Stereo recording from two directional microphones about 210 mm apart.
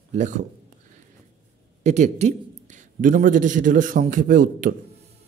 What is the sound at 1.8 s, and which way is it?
Speech, 35° right (ahead or behind).